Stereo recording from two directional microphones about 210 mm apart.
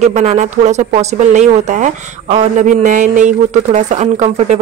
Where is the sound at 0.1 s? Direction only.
30° right (ahead or behind).